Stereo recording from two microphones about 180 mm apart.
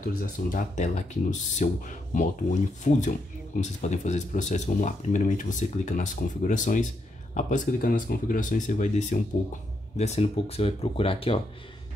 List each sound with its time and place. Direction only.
0.0 s speech: 45° left (ahead or behind)
2.8 s speech: 45° left (ahead or behind)